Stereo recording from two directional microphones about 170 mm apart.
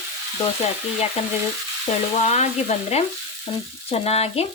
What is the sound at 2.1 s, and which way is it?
A woman's voice, 40° left (ahead or behind).